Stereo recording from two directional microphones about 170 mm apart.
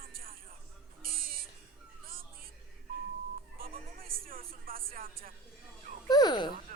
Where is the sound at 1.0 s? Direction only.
60° right (ahead or behind).